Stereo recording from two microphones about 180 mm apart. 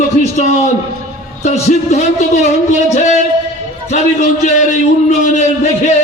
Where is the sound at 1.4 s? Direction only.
40° left (ahead or behind).